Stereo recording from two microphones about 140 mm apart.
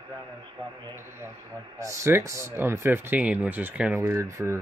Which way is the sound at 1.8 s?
20° right (ahead or behind).